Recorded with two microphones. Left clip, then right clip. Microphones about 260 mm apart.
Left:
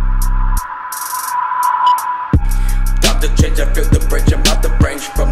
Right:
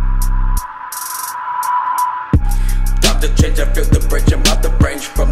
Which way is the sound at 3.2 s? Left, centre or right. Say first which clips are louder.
Even; left.